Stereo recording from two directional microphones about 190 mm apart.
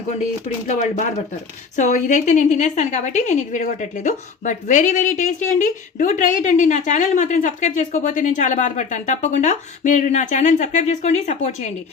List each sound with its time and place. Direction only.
0.7 s a woman's voice: 40° left (ahead or behind)